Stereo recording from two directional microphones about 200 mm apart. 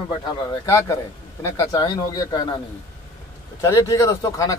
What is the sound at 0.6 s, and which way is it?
A man's voice, 15° left (ahead or behind).